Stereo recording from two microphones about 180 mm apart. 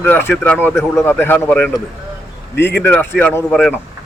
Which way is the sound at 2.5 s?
70° left (ahead or behind).